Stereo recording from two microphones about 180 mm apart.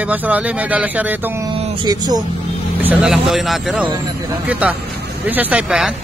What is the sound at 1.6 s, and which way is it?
Speech, 25° right (ahead or behind).